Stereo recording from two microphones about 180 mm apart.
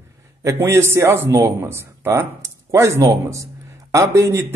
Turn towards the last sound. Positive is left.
turn(degrees=-15)  # may be behind; listen again after turning